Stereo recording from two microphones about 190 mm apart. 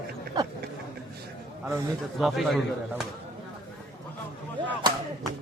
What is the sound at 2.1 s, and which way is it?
Speech, centre (ahead or behind).